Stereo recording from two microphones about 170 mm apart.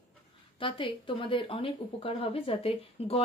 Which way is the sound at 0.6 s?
30° left (ahead or behind).